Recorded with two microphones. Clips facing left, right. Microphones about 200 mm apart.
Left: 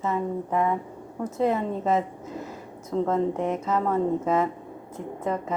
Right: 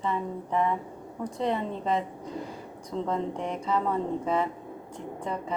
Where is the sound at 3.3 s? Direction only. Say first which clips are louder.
Left 6 dB; 5° left (ahead or behind).